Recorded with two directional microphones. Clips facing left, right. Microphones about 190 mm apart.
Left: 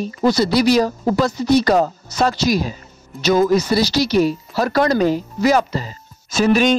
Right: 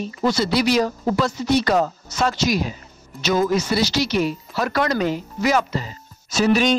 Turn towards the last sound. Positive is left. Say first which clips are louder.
# left 3 dB
turn(degrees=55)  # may be behind; listen again after turning